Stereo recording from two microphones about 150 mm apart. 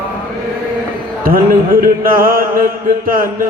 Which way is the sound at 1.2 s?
75° right (ahead or behind).